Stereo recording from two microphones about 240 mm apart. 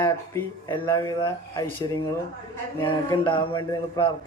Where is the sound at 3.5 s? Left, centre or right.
Centre.